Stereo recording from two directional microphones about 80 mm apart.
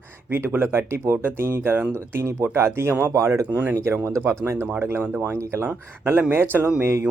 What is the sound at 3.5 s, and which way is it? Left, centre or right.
Speech, right.